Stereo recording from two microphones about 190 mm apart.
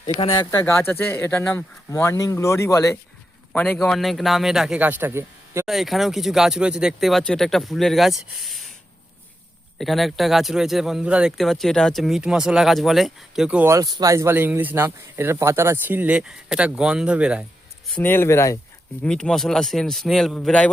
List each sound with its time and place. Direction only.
0.0 s speech: 30° left (ahead or behind)
0.3 s speech: 20° left (ahead or behind); by 5.6 s 10° right (ahead or behind)
5.6 s speech: centre (ahead or behind)
9.7 s speech: centre (ahead or behind)
17.8 s speech: 10° left (ahead or behind)
19.0 s speech: 5° left (ahead or behind)